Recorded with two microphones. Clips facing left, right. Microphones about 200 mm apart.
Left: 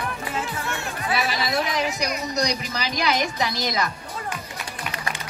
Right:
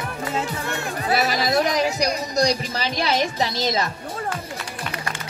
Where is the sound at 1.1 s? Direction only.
40° right (ahead or behind); by 3.9 s 25° right (ahead or behind).